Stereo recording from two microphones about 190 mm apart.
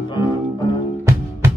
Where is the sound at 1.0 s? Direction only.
15° right (ahead or behind).